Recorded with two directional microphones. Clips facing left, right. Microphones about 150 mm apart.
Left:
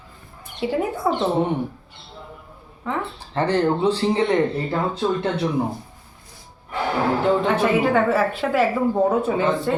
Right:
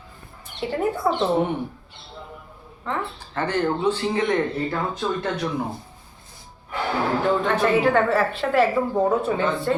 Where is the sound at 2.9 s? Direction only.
10° left (ahead or behind).